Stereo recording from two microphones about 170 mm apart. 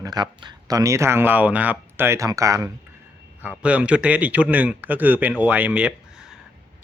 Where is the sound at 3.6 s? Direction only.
10° right (ahead or behind).